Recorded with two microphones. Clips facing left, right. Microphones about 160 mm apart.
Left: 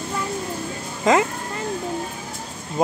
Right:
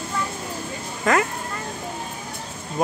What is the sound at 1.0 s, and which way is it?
Speech, 20° left (ahead or behind).